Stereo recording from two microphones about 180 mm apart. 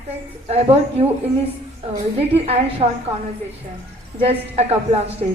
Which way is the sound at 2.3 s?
30° right (ahead or behind).